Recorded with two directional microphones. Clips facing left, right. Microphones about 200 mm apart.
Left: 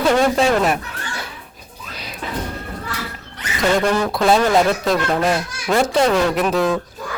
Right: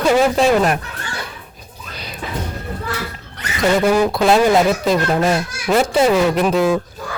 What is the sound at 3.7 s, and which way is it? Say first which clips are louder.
Speech: right 6 dB; 10° right (ahead or behind).